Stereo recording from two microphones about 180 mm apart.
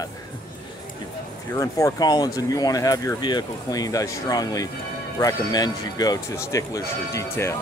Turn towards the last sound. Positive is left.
turn(degrees=15)  # may be behind; listen again after turning